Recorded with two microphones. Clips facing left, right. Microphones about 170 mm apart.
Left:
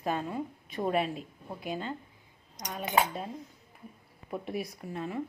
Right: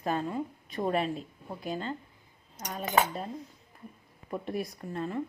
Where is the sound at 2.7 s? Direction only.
10° left (ahead or behind).